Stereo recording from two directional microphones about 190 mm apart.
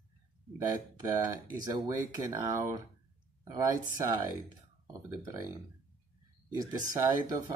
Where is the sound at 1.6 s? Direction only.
20° right (ahead or behind).